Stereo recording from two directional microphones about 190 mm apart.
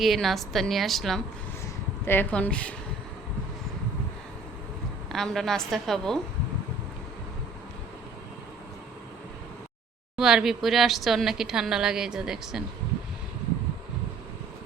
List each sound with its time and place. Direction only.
0.0 s a woman's voice: centre (ahead or behind)
5.1 s a woman's voice: centre (ahead or behind)
10.2 s a woman's voice: 5° right (ahead or behind)